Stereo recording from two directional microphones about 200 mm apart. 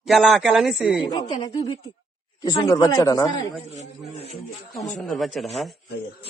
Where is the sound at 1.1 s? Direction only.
20° left (ahead or behind).